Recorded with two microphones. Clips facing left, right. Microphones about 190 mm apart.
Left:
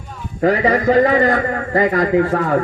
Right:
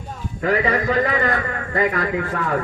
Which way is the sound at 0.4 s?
40° left (ahead or behind).